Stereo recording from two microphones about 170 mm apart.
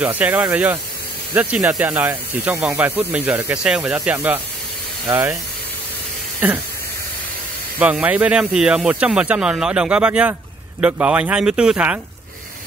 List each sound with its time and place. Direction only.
0.0 s speech: 10° right (ahead or behind)
7.8 s speech: 10° right (ahead or behind)